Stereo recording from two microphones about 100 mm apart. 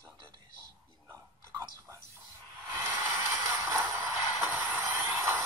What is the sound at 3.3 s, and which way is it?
Music, 30° right (ahead or behind).